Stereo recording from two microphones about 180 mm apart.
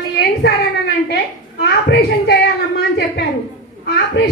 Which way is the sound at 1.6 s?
65° left (ahead or behind).